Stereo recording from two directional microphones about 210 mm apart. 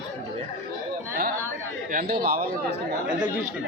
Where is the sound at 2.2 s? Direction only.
45° right (ahead or behind).